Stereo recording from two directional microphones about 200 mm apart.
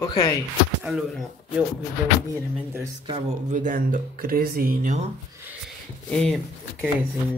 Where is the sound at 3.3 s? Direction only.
40° right (ahead or behind).